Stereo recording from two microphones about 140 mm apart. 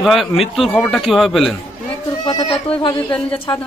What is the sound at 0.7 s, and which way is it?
Speech, 10° left (ahead or behind).